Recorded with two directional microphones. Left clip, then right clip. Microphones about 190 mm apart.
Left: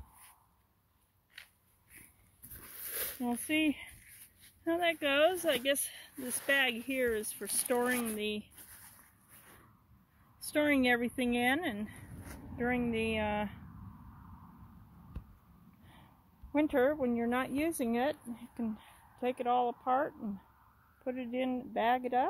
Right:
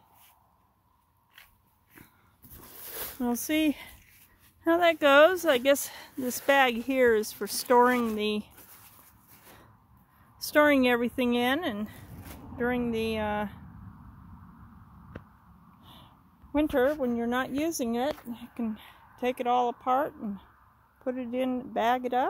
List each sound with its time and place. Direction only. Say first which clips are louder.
2.9 s speech: right 5 dB; 25° right (ahead or behind)
10.4 s speech: right 8 dB; 25° right (ahead or behind)
16.5 s speech: right 4 dB; 10° right (ahead or behind)